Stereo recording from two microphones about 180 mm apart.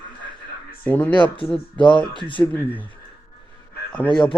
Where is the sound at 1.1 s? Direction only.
25° left (ahead or behind).